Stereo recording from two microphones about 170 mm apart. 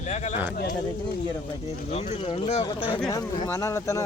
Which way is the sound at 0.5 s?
60° left (ahead or behind).